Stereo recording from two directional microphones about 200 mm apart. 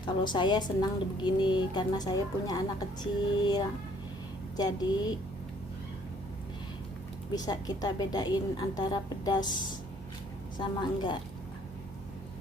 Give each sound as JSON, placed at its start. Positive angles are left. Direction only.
{"t": 0.0, "sound": "a woman's voice", "side_deg": 25}
{"t": 7.3, "sound": "a woman's voice", "side_deg": 20}
{"t": 10.6, "sound": "a woman's voice", "side_deg": 25}